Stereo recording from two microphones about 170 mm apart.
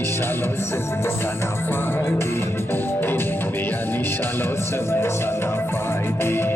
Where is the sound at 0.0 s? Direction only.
15° left (ahead or behind).